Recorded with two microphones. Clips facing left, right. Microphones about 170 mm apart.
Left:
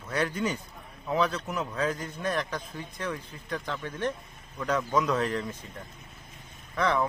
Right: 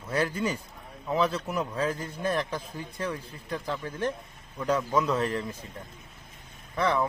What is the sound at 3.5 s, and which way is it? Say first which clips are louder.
Speech: right 2 dB; 5° right (ahead or behind).